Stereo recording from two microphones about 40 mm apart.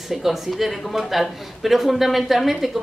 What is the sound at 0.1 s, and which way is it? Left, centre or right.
A woman's voice, centre.